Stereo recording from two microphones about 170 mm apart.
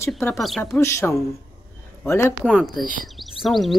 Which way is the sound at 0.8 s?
15° left (ahead or behind).